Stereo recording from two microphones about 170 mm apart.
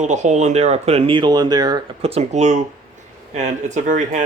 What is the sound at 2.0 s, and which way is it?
Speech, 40° right (ahead or behind).